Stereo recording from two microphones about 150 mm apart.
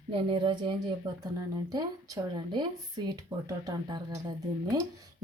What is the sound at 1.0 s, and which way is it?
A woman's voice, 25° right (ahead or behind).